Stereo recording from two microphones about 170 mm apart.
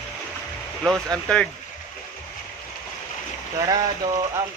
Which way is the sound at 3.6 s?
25° right (ahead or behind).